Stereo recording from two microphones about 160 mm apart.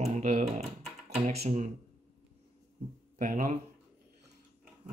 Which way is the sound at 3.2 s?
60° right (ahead or behind).